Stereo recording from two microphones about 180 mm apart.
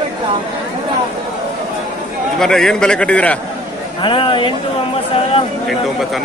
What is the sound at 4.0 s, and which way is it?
Speech, 25° left (ahead or behind).